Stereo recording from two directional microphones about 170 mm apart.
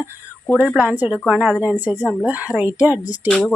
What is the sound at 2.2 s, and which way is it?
Speech, 10° right (ahead or behind).